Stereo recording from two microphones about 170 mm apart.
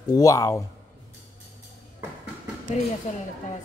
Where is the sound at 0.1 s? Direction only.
20° left (ahead or behind).